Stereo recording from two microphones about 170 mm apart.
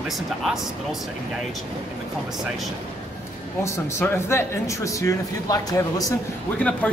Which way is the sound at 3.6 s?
15° left (ahead or behind).